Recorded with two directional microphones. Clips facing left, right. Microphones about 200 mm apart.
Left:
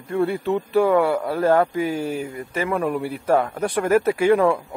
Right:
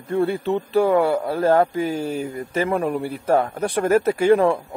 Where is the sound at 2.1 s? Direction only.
35° right (ahead or behind).